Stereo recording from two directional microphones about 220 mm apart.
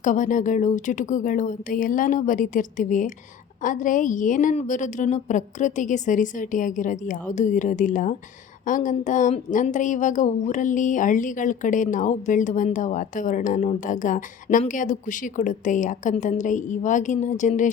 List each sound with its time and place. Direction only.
0.0 s a woman's voice: 35° left (ahead or behind)